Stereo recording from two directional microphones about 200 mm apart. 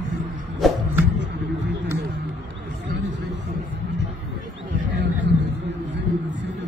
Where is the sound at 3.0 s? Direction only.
65° right (ahead or behind).